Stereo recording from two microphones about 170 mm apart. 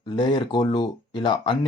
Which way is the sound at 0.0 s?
25° left (ahead or behind).